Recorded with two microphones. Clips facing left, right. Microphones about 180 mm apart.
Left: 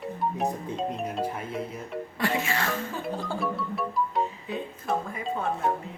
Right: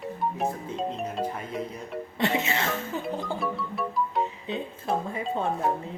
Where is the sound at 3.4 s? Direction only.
Centre (ahead or behind).